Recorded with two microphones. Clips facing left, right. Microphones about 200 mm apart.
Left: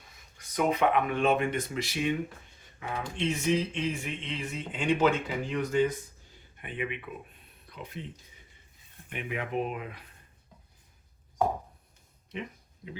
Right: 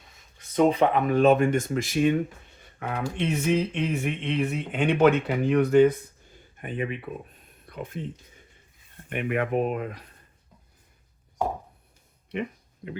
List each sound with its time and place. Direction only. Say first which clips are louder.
0.3 s speech: right 7 dB; 30° right (ahead or behind); by 2.2 s 45° right (ahead or behind)
2.8 s speech: right 4 dB; 60° right (ahead or behind)
6.6 s speech: right 5 dB; 40° right (ahead or behind)
7.7 s speech: right 7 dB; 50° right (ahead or behind)
9.0 s speech: right 8 dB; 60° right (ahead or behind)
12.3 s a sound: right 7 dB; 60° right (ahead or behind)